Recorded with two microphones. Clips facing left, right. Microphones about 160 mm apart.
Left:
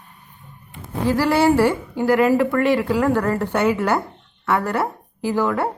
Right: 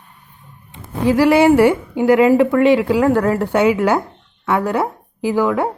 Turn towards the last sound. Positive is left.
turn(degrees=-15)  # may be behind; listen again after turning